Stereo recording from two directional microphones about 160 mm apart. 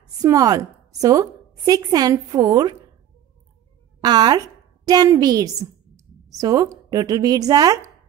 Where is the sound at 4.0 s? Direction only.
25° right (ahead or behind).